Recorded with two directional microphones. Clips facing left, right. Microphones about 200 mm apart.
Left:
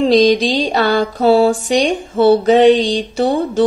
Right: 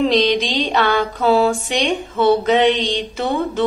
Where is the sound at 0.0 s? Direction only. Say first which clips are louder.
Left 5 dB; 35° left (ahead or behind).